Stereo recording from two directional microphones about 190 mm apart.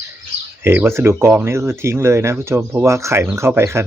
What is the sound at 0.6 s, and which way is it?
Speech, 10° right (ahead or behind).